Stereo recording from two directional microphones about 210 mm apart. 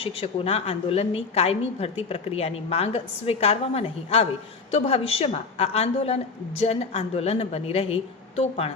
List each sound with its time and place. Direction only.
0.0 s a woman's voice: 25° left (ahead or behind)